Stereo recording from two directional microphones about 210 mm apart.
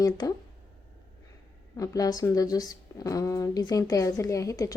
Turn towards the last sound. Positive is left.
turn(degrees=15)  # may be behind; listen again after turning